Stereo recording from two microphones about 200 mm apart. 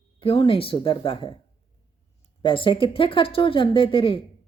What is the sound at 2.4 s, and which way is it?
A woman's voice, 25° left (ahead or behind).